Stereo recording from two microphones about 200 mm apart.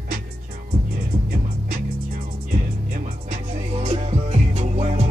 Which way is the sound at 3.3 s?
35° right (ahead or behind).